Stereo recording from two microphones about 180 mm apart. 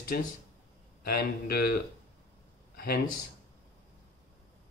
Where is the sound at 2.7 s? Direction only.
55° left (ahead or behind).